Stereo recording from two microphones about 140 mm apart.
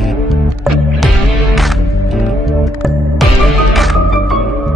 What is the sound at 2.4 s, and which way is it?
Music, centre (ahead or behind).